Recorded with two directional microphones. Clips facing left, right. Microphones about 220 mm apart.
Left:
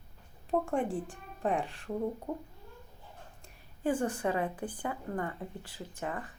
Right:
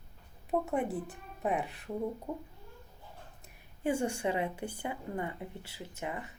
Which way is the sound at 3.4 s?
10° right (ahead or behind).